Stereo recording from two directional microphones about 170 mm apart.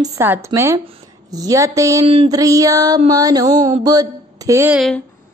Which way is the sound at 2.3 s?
20° right (ahead or behind).